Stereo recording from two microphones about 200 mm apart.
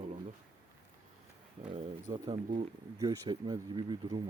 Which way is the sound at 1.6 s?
25° right (ahead or behind).